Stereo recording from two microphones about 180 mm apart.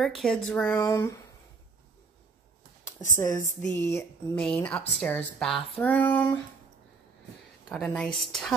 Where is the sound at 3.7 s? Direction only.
15° left (ahead or behind).